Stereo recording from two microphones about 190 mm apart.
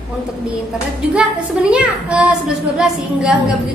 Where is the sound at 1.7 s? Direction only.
5° right (ahead or behind).